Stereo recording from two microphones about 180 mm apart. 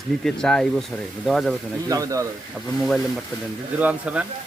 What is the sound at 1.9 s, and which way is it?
Speech, 20° right (ahead or behind).